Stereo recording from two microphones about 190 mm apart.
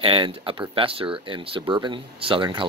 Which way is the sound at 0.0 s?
30° right (ahead or behind).